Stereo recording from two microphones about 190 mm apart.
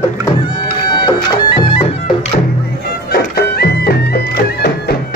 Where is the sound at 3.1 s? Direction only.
55° left (ahead or behind).